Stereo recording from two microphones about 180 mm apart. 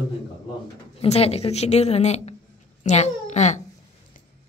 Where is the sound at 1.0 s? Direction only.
35° left (ahead or behind).